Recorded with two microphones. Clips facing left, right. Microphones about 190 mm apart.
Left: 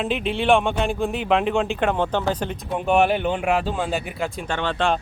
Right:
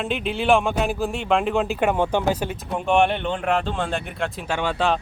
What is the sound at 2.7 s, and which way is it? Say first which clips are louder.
Speech: left 1 dB; 5° left (ahead or behind).